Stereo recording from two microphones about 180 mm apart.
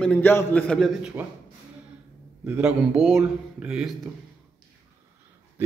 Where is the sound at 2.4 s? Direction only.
5° right (ahead or behind).